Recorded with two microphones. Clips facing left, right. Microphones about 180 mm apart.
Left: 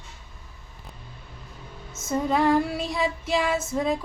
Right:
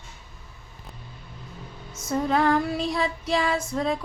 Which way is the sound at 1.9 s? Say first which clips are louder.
Even; 25° left (ahead or behind).